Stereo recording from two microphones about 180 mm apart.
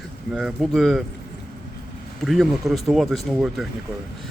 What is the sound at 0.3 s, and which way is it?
Speech, centre (ahead or behind).